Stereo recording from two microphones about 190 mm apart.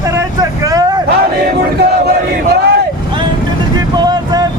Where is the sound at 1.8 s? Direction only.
60° right (ahead or behind).